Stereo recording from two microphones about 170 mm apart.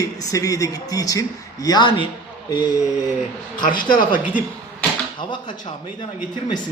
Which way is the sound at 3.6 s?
55° left (ahead or behind).